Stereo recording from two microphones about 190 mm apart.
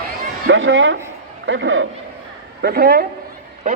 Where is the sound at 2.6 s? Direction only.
55° right (ahead or behind).